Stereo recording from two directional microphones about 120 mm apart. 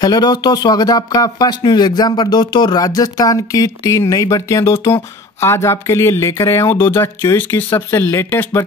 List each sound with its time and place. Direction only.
0.0 s speech: 35° left (ahead or behind)